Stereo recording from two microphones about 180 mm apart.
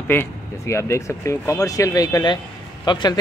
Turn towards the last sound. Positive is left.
turn(degrees=25)  # may be behind; listen again after turning